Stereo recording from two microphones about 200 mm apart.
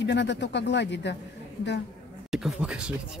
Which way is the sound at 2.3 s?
5° right (ahead or behind).